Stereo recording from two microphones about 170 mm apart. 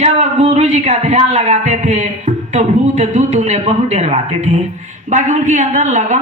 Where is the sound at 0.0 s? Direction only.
40° right (ahead or behind).